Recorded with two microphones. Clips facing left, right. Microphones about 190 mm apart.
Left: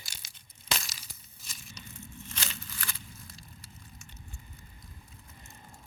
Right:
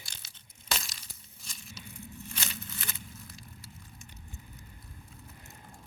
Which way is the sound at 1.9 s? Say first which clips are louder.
Right 2 dB; 15° right (ahead or behind).